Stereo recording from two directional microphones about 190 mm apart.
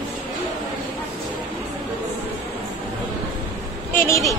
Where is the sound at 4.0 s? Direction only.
15° left (ahead or behind).